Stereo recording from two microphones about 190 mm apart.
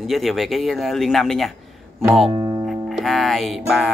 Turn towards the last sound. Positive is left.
turn(degrees=0)  # may be behind; listen again after turning